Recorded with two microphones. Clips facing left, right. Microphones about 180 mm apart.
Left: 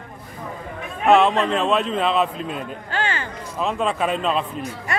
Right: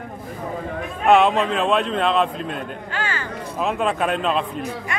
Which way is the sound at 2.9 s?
25° left (ahead or behind).